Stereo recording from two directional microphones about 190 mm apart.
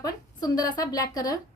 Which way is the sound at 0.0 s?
20° left (ahead or behind).